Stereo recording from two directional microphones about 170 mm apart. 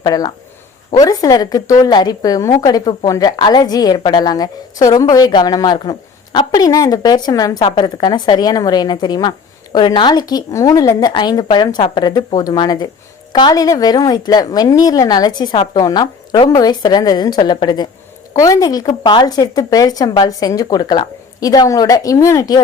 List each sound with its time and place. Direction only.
0.0 s a woman's voice: 20° left (ahead or behind)